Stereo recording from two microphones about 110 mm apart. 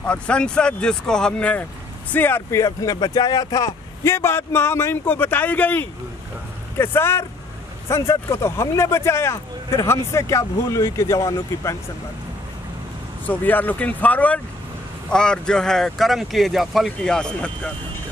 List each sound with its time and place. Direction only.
0.0 s speech: 10° left (ahead or behind); by 11.7 s 30° left (ahead or behind)
13.3 s speech: 15° left (ahead or behind)